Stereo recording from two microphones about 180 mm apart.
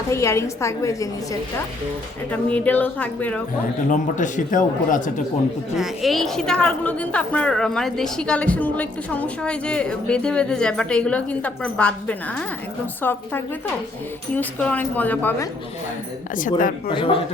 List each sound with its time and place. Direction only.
0.1 s a woman's voice: 15° left (ahead or behind)
2.3 s a woman's voice: 10° left (ahead or behind)
3.8 s speech: 45° left (ahead or behind)
5.7 s a woman's voice: centre (ahead or behind)
16.9 s speech: 30° left (ahead or behind)